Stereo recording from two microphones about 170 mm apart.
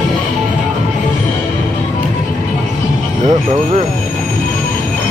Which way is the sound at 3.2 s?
45° right (ahead or behind).